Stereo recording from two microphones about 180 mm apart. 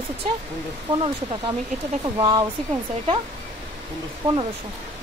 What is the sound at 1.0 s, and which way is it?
Speech, 30° right (ahead or behind).